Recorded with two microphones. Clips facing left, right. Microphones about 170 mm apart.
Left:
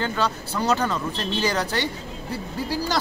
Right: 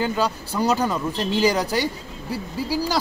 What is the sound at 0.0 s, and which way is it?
Speech, 10° right (ahead or behind).